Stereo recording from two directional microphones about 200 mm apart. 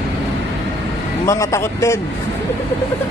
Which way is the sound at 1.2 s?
15° left (ahead or behind).